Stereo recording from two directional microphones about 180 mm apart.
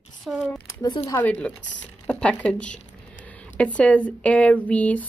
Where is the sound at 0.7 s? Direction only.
20° left (ahead or behind).